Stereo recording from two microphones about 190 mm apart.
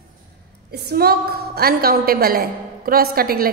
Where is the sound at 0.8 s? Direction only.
55° right (ahead or behind).